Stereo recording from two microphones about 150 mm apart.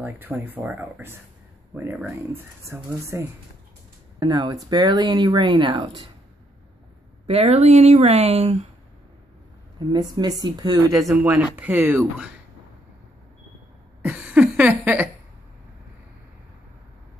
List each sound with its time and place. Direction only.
0.0 s speech: 15° right (ahead or behind); by 6.0 s 30° right (ahead or behind)
7.2 s speech: 45° right (ahead or behind)
9.8 s speech: 25° right (ahead or behind)
11.1 s speech: 10° right (ahead or behind)
14.0 s a sound: 10° right (ahead or behind)